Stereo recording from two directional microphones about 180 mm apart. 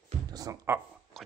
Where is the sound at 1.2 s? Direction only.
Centre (ahead or behind).